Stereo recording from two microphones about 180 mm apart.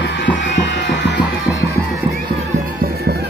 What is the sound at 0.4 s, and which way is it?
Music, 80° left.